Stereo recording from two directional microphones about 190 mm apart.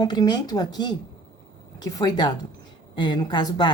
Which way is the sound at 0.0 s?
20° left (ahead or behind).